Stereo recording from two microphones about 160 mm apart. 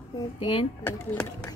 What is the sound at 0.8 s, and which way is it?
Speech, 5° left (ahead or behind).